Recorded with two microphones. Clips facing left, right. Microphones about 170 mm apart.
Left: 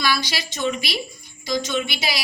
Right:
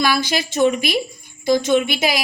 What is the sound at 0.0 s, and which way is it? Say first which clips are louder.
A woman's voice: right 5 dB; 50° right (ahead or behind).